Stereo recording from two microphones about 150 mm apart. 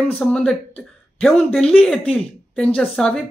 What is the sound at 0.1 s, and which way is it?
Speech, 5° left (ahead or behind).